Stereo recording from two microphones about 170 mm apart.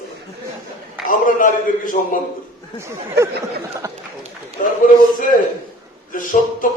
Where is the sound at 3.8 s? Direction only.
20° right (ahead or behind).